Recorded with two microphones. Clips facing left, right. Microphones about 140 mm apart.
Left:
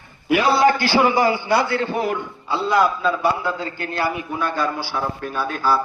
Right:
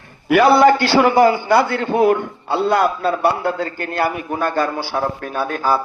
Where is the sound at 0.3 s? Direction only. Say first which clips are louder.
Right 5 dB; 65° right (ahead or behind).